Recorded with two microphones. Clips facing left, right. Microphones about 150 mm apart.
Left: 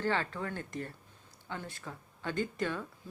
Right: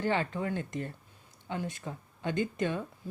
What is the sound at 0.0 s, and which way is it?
Speech, 15° right (ahead or behind).